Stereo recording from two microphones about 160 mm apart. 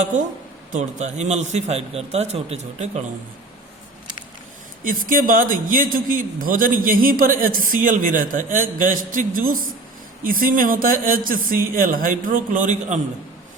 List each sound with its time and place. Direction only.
0.7 s a man's voice: 45° right (ahead or behind)
4.8 s a man's voice: 60° right (ahead or behind)